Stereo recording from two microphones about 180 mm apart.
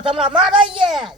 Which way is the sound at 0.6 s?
30° right (ahead or behind).